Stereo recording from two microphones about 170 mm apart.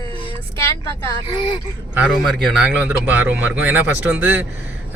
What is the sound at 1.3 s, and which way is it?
Speech, 25° left (ahead or behind).